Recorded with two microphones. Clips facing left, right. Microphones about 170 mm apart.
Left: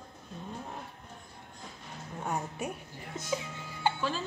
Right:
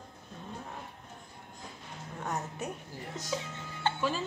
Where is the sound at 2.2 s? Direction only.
10° left (ahead or behind).